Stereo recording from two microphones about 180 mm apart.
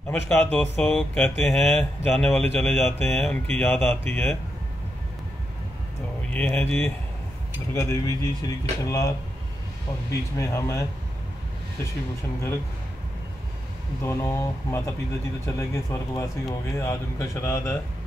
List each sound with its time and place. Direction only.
0.1 s a man's voice: 10° left (ahead or behind)
6.3 s a man's voice: 10° left (ahead or behind)
7.7 s speech: 20° left (ahead or behind)
10.4 s a man's voice: 15° left (ahead or behind)
14.0 s a man's voice: 15° left (ahead or behind)